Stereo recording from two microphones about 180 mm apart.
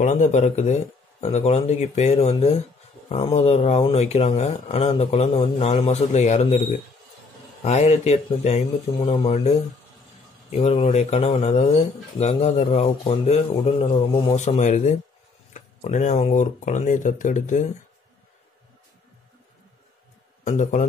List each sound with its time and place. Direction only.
0.0 s speech: 45° left (ahead or behind)
7.6 s speech: 35° left (ahead or behind)
10.5 s speech: 30° left (ahead or behind)
20.4 s speech: 40° left (ahead or behind)